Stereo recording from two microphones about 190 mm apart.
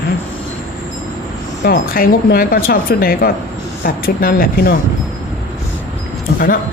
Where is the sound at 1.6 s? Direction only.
50° left (ahead or behind).